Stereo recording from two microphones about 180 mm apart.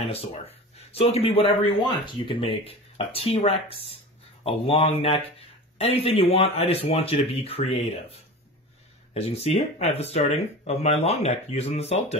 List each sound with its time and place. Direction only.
0.0 s speech: 35° left (ahead or behind)